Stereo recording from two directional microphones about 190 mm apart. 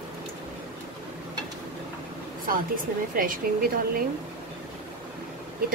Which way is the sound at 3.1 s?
45° right (ahead or behind).